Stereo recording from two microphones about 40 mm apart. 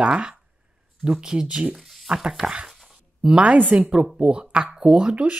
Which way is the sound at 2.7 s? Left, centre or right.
Centre.